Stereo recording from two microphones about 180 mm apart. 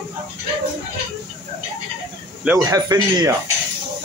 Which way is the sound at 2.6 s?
20° right (ahead or behind).